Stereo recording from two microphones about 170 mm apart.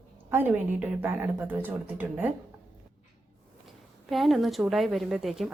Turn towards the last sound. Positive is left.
turn(degrees=0)  # may be behind; listen again after turning